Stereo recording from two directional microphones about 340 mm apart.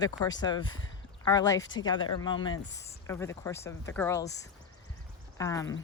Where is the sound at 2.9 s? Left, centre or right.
Centre.